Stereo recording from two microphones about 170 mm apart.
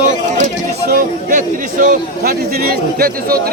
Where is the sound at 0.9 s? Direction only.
50° right (ahead or behind).